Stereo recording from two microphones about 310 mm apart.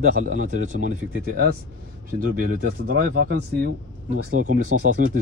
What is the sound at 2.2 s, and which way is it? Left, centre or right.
Speech, right.